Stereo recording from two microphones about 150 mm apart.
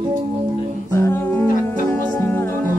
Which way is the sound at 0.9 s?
15° left (ahead or behind).